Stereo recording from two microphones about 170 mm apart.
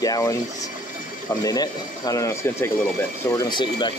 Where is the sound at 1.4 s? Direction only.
20° left (ahead or behind).